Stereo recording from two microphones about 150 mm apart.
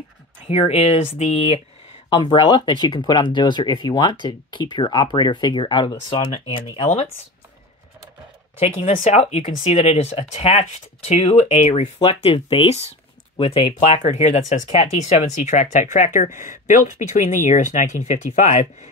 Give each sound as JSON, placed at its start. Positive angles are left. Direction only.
{"t": 0.5, "sound": "speech", "side_deg": 45}
{"t": 2.0, "sound": "speech", "side_deg": 35}
{"t": 8.6, "sound": "speech", "side_deg": 45}